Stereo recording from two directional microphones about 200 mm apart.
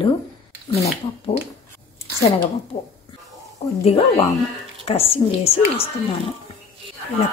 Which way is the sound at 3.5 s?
30° left (ahead or behind).